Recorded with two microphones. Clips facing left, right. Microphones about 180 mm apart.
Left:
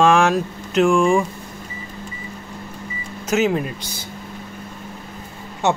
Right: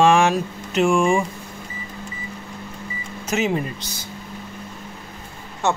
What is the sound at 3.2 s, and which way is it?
Speech, centre (ahead or behind).